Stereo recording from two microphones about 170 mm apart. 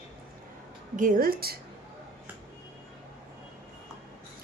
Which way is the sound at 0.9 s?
50° right (ahead or behind).